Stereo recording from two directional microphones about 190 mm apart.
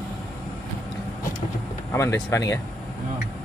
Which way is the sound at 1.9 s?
15° left (ahead or behind).